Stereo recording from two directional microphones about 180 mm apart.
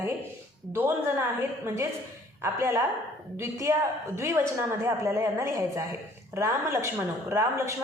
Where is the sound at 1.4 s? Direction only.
15° right (ahead or behind).